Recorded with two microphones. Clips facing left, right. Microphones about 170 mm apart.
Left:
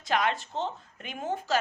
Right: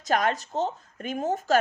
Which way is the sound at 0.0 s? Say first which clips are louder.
Right 3 dB; 45° right (ahead or behind).